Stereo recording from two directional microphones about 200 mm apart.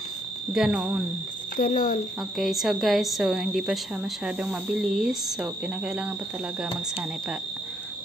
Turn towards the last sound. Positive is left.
turn(degrees=-5)  # may be behind; listen again after turning